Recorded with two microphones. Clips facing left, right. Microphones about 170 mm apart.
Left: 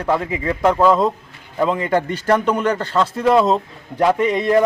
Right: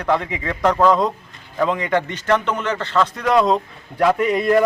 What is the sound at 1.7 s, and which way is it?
Speech, 35° left (ahead or behind).